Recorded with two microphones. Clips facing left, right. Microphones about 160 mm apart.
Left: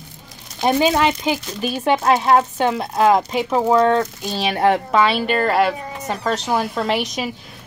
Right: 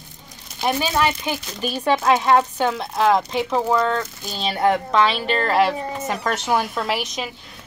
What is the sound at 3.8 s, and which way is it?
Speech, 25° left (ahead or behind).